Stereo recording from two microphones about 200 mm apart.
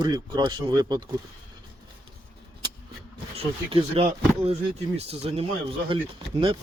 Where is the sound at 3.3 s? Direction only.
30° right (ahead or behind).